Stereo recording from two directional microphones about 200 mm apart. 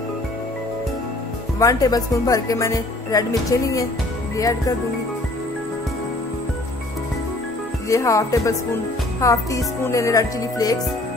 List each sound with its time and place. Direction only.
1.6 s speech: 15° left (ahead or behind)
7.9 s speech: 15° left (ahead or behind)